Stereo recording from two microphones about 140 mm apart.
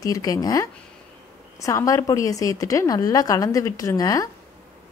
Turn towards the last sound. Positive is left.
turn(degrees=25)  # may be behind; listen again after turning